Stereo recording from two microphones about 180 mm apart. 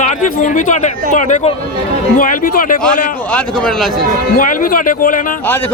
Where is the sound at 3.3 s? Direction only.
5° left (ahead or behind).